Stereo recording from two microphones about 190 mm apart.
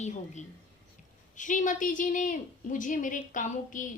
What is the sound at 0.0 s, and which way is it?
A woman's voice, 40° left (ahead or behind).